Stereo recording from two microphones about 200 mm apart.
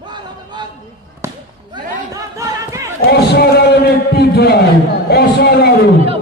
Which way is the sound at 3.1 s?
55° left (ahead or behind).